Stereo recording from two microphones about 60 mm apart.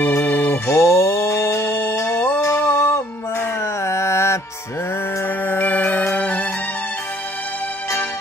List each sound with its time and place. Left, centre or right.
0.2 s music: left
5.4 s music: left